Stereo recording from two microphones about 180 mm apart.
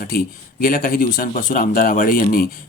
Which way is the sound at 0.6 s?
50° left (ahead or behind).